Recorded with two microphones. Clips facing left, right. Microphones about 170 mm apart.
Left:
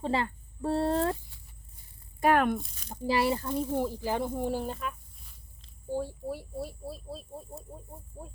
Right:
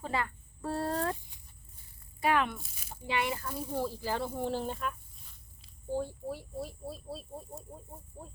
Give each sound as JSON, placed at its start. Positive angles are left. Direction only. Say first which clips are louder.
{"t": 0.0, "sound": "speech", "louder": "left 5 dB", "side_deg": 30}
{"t": 1.3, "sound": "a sound", "louder": "left 3 dB", "side_deg": -20}
{"t": 2.2, "sound": "speech", "louder": "left 5 dB", "side_deg": 50}
{"t": 2.9, "sound": "speech", "louder": "left 6 dB", "side_deg": 35}
{"t": 3.7, "sound": "speech", "louder": "even", "side_deg": 15}